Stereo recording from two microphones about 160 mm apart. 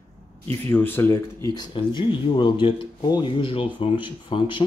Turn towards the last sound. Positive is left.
turn(degrees=30)  # may be behind; listen again after turning